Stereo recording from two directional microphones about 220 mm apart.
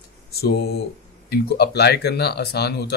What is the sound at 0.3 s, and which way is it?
Speech, 45° left (ahead or behind).